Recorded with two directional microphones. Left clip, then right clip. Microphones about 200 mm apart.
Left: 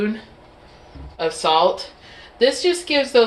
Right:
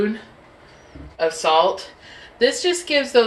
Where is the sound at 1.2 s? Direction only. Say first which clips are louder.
Right 1 dB; 20° left (ahead or behind).